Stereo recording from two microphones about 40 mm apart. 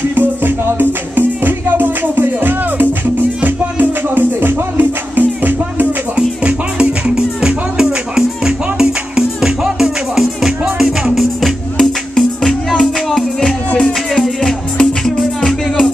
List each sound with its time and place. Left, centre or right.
0.1 s music: right
6.1 s music: right
9.8 s music: centre
11.1 s music: centre
13.7 s music: centre